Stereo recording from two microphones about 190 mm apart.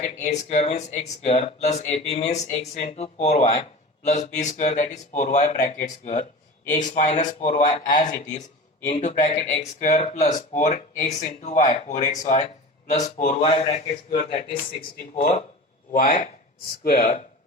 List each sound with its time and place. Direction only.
0.0 s speech: 35° left (ahead or behind)